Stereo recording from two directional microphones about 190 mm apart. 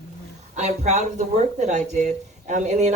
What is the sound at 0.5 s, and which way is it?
Speech, 35° right (ahead or behind).